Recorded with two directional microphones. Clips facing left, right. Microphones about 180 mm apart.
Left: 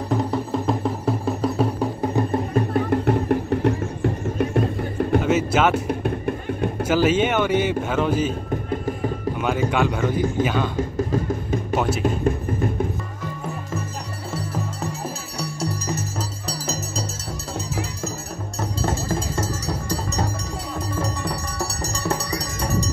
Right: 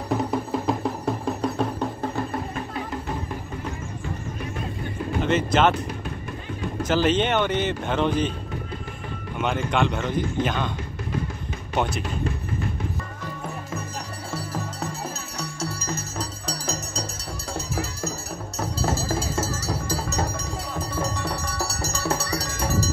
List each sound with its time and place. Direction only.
0.1 s music: centre (ahead or behind)
2.5 s music: 55° left (ahead or behind)
5.2 s speech: 5° left (ahead or behind)
5.9 s music: 55° left (ahead or behind)
6.9 s speech: 5° left (ahead or behind)
8.6 s music: 45° left (ahead or behind)
9.4 s speech: 5° left (ahead or behind)
10.8 s music: 45° left (ahead or behind)
11.7 s speech: 5° left (ahead or behind)
15.3 s music: 15° left (ahead or behind)
16.4 s music: 5° left (ahead or behind)
18.6 s music: centre (ahead or behind)